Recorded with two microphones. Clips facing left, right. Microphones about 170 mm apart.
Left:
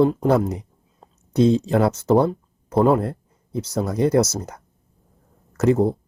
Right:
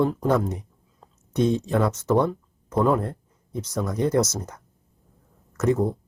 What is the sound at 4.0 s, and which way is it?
Speech, 75° left (ahead or behind).